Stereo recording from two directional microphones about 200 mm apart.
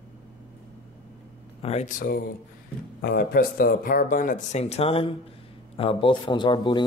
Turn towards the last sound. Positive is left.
turn(degrees=20)  # may be behind; listen again after turning